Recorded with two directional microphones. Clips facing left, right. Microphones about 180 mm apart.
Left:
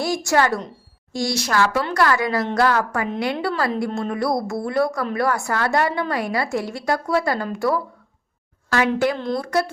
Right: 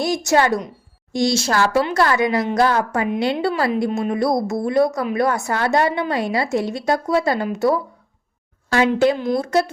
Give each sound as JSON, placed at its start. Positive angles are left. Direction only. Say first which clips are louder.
{"t": 0.0, "sound": "a woman's voice", "louder": "right 2 dB", "side_deg": -20}
{"t": 9.1, "sound": "speech", "louder": "right 3 dB", "side_deg": -5}
{"t": 9.4, "sound": "a woman's voice", "louder": "right 3 dB", "side_deg": -25}